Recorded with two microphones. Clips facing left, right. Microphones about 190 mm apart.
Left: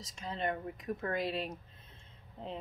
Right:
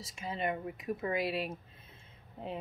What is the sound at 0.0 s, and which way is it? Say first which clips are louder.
Speech: right 1 dB; 5° right (ahead or behind).